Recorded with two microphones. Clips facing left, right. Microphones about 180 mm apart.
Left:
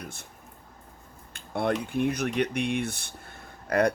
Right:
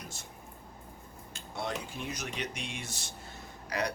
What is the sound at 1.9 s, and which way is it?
Speech, 60° left (ahead or behind).